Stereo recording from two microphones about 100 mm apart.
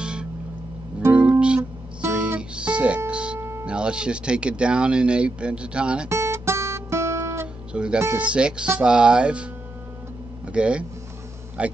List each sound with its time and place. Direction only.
0.0 s a sound: 10° right (ahead or behind)
1.1 s guitar: 10° right (ahead or behind)
2.0 s music: 15° right (ahead or behind)
3.1 s speech: 10° right (ahead or behind)
3.3 s music: 25° right (ahead or behind)
3.6 s speech: 10° right (ahead or behind)
6.0 s music: 25° right (ahead or behind)
7.7 s speech: 10° right (ahead or behind)